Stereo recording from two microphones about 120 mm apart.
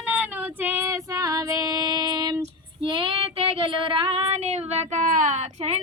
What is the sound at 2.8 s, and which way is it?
Child singing, 45° right (ahead or behind).